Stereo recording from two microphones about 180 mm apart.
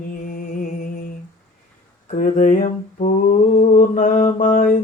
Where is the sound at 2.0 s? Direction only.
45° left (ahead or behind).